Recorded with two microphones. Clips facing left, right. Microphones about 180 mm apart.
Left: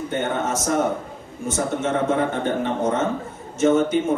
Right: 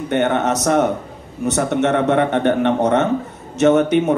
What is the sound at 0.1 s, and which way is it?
Speech, 70° right (ahead or behind).